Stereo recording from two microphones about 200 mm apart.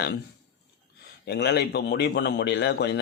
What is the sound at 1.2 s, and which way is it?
Speech, 55° left (ahead or behind).